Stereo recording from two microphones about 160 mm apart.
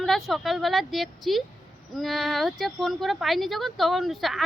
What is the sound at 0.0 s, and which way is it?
Speech, centre (ahead or behind).